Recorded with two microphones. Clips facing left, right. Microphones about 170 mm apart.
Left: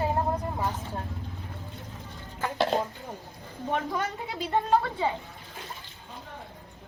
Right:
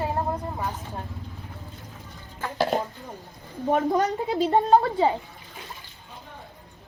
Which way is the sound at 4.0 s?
40° right (ahead or behind).